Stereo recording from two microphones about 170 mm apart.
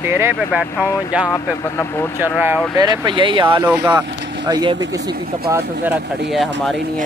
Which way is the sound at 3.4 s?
10° right (ahead or behind).